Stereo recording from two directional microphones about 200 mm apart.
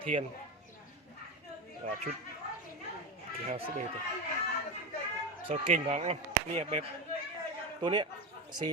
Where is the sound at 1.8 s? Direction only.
35° right (ahead or behind).